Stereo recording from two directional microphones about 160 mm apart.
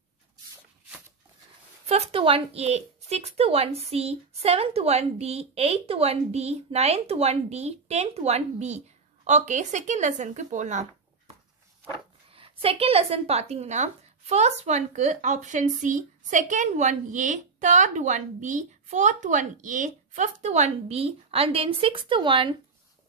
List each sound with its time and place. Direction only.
1.9 s speech: 40° right (ahead or behind)
12.3 s a woman's voice: 35° right (ahead or behind)